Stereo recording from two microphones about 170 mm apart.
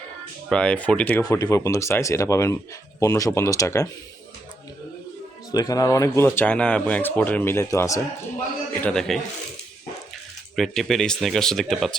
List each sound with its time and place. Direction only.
0.4 s speech: 5° left (ahead or behind)
1.2 s speech: 20° left (ahead or behind)
5.5 s speech: 20° left (ahead or behind)
8.8 s speech: 5° left (ahead or behind)
10.5 s speech: centre (ahead or behind)